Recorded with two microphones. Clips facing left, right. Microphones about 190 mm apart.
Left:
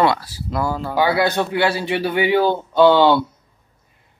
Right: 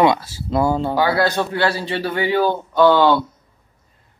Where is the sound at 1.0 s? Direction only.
15° left (ahead or behind).